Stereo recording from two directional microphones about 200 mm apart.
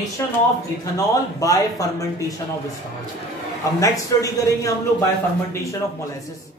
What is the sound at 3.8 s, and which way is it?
Speech, 15° left (ahead or behind).